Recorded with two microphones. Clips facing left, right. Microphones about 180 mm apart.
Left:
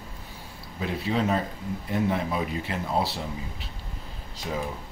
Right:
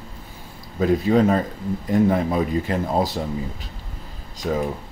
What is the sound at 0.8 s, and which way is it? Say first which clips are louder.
Speech: right 9 dB; 45° right (ahead or behind).